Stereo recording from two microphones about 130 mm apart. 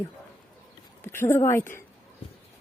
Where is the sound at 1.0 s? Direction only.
20° left (ahead or behind).